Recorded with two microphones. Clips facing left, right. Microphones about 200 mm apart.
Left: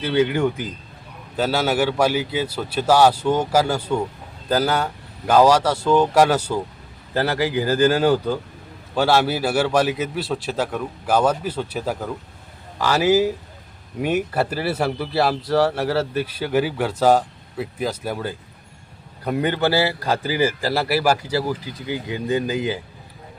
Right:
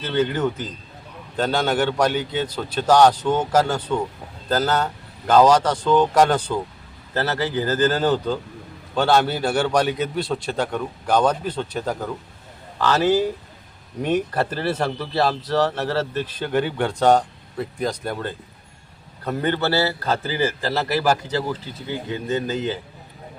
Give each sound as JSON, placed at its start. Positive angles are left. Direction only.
{"t": 0.0, "sound": "speech", "side_deg": 10}